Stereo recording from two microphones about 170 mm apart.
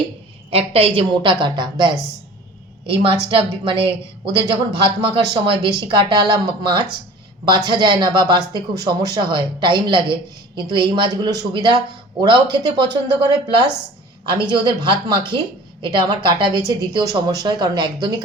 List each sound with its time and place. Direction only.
0.5 s speech: 35° right (ahead or behind)